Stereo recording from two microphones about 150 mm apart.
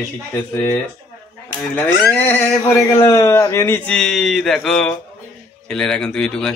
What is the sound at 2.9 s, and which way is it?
A man's voice, 20° left (ahead or behind).